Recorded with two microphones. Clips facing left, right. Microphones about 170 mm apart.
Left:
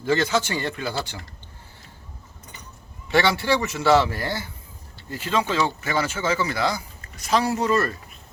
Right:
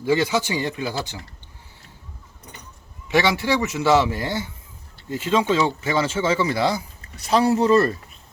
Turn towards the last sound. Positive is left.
turn(degrees=-30)  # may be behind; listen again after turning